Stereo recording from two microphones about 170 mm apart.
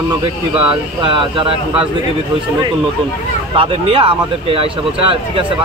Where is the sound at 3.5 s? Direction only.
35° right (ahead or behind).